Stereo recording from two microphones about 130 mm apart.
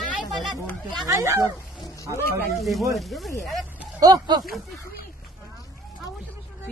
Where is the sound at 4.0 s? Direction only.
30° right (ahead or behind).